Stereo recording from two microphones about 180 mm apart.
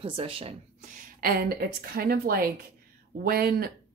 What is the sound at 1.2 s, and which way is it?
A woman's voice, 60° right (ahead or behind).